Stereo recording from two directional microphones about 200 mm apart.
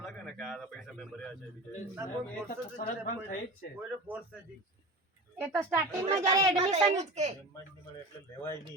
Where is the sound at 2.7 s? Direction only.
45° left (ahead or behind).